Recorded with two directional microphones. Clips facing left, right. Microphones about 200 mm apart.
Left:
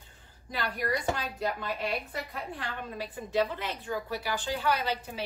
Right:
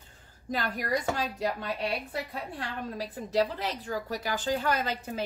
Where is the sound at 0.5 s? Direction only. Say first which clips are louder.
Right 1 dB; 45° right (ahead or behind).